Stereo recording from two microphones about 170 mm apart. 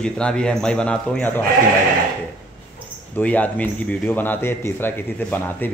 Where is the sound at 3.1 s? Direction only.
10° left (ahead or behind).